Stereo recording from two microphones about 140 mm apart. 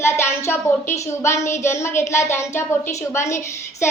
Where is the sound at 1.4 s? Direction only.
20° left (ahead or behind).